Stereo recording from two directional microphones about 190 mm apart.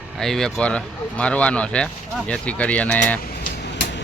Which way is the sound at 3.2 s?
65° left (ahead or behind).